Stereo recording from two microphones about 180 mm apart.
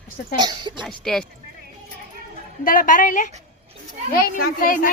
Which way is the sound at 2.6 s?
50° left (ahead or behind).